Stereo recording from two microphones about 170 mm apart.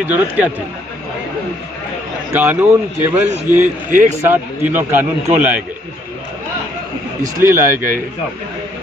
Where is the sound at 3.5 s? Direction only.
50° right (ahead or behind).